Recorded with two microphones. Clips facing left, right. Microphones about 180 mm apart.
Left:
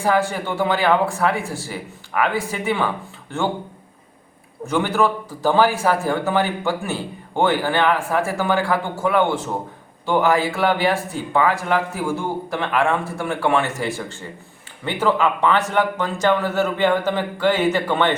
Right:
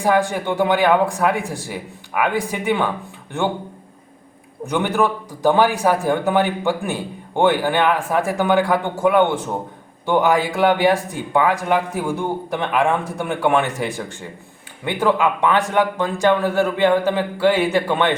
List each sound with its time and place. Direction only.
0.0 s speech: 15° right (ahead or behind)
4.6 s speech: 15° right (ahead or behind)